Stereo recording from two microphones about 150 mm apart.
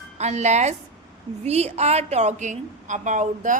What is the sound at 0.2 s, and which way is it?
A woman's voice, 50° right (ahead or behind).